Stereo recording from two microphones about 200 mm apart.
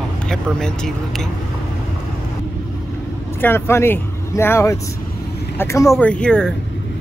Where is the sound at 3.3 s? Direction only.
10° left (ahead or behind).